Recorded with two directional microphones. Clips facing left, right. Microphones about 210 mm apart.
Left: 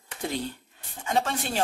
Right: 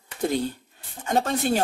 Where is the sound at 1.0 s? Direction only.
40° right (ahead or behind).